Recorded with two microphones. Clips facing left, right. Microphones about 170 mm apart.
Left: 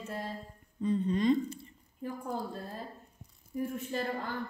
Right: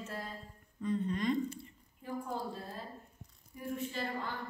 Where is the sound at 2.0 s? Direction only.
45° left (ahead or behind).